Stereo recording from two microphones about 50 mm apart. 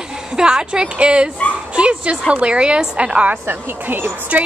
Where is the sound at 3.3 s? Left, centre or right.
Right.